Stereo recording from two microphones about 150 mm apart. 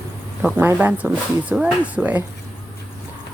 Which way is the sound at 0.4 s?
15° right (ahead or behind).